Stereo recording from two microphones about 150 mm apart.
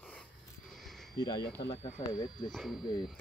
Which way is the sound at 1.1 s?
30° left (ahead or behind).